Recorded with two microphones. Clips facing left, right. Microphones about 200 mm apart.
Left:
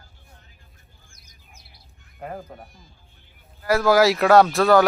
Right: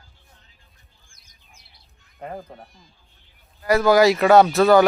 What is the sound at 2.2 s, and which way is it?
Speech, 5° left (ahead or behind).